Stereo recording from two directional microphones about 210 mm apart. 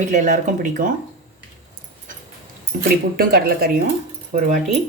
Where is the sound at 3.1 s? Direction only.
45° right (ahead or behind).